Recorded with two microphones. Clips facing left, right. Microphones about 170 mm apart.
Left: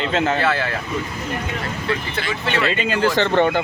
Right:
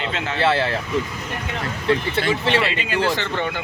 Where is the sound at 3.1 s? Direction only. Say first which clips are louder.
Left 8 dB; 55° left (ahead or behind).